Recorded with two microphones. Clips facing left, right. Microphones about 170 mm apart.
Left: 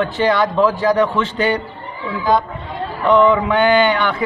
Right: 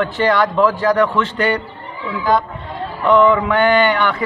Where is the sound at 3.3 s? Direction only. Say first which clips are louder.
Even; 10° left (ahead or behind).